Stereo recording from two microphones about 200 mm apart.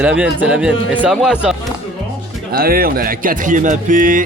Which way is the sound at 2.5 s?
50° right (ahead or behind).